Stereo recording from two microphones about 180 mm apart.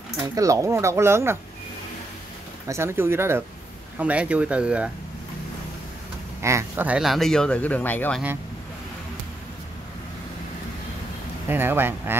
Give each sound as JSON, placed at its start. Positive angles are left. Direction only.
{"t": 0.2, "sound": "speech", "side_deg": -20}
{"t": 2.7, "sound": "speech", "side_deg": -15}
{"t": 6.4, "sound": "speech", "side_deg": -15}
{"t": 11.4, "sound": "speech", "side_deg": -10}